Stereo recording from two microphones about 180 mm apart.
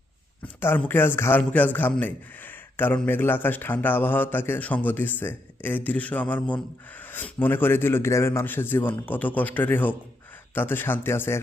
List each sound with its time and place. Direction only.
0.6 s a man's voice: 10° left (ahead or behind)